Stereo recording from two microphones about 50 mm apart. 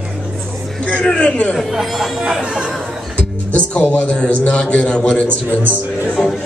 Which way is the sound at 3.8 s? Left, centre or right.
Left.